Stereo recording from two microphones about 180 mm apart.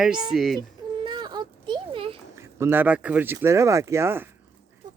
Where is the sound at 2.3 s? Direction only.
15° right (ahead or behind).